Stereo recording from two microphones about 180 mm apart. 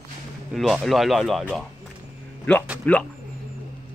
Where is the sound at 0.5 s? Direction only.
Centre (ahead or behind).